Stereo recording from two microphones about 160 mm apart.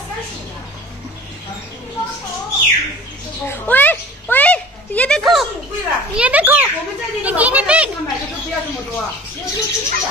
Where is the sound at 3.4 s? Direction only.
10° left (ahead or behind).